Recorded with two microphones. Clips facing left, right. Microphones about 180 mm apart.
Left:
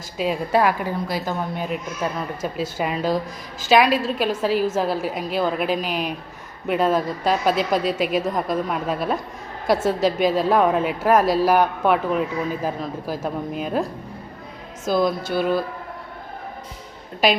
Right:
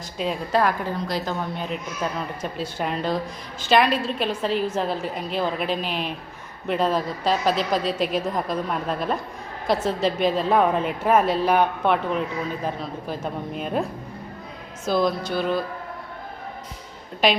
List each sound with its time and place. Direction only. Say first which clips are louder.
0.2 s a woman's voice: left 3 dB; 5° left (ahead or behind)
14.8 s a woman's voice: left 1 dB; centre (ahead or behind)